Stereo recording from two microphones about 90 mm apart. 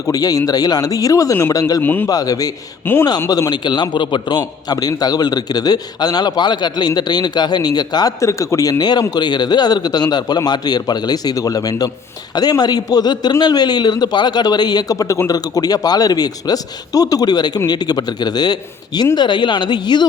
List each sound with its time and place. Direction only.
0.0 s speech: 45° left (ahead or behind)
1.5 s a man's voice: 45° left (ahead or behind)
1.8 s speech: 20° left (ahead or behind)
2.0 s a man's voice: 45° left (ahead or behind)
2.8 s speech: 25° left (ahead or behind)
3.2 s a man's voice: 40° left (ahead or behind)
8.2 s a man's voice: 35° left (ahead or behind); by 20.1 s 55° left (ahead or behind)